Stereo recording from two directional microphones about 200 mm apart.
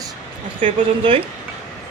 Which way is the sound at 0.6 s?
25° right (ahead or behind).